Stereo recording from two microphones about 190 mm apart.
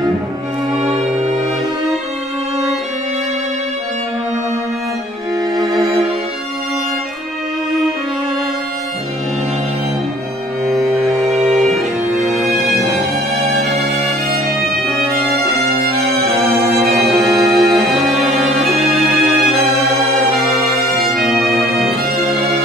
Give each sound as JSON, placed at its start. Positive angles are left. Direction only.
{"t": 10.7, "sound": "music", "side_deg": 0}
{"t": 12.3, "sound": "music", "side_deg": 0}
{"t": 12.9, "sound": "music", "side_deg": -35}
{"t": 16.3, "sound": "music", "side_deg": 0}
{"t": 21.0, "sound": "music", "side_deg": 0}